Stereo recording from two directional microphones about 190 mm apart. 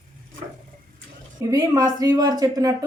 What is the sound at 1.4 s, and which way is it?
Speech, 20° right (ahead or behind).